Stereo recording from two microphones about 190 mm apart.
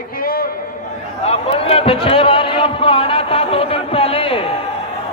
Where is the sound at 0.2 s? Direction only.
50° left (ahead or behind).